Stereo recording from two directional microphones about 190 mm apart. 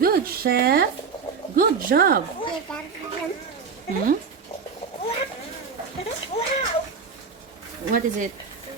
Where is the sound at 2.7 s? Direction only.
5° left (ahead or behind).